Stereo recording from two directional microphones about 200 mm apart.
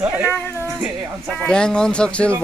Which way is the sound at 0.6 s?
5° right (ahead or behind).